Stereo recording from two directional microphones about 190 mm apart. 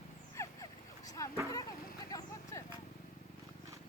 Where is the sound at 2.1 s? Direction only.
20° left (ahead or behind).